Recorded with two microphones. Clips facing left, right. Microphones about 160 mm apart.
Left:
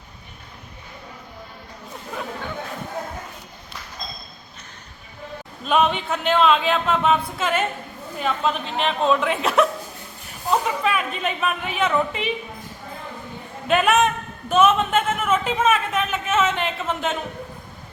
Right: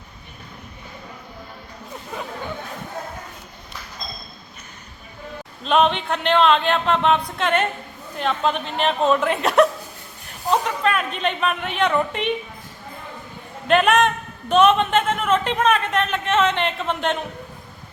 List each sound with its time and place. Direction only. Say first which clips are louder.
5.6 s a man's voice: right 2 dB; 5° left (ahead or behind)
10.7 s a man's voice: right 1 dB; 5° left (ahead or behind)
13.7 s a man's voice: right 1 dB; 5° left (ahead or behind)